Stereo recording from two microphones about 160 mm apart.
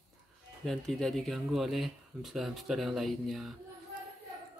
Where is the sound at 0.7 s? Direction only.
Centre (ahead or behind).